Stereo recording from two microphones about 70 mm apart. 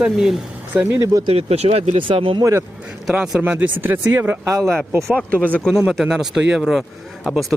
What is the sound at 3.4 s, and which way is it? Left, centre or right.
Speech, right.